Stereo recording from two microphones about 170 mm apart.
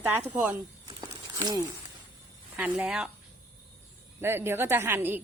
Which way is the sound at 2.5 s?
10° right (ahead or behind).